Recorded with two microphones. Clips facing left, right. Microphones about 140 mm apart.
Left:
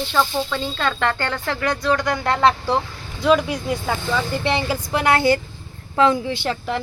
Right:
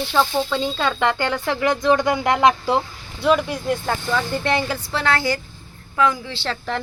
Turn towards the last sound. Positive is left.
turn(degrees=15)  # may be behind; listen again after turning